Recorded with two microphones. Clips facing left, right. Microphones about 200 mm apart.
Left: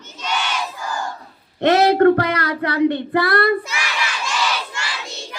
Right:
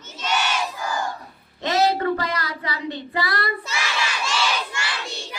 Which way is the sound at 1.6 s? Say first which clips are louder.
Left 8 dB; 65° left (ahead or behind).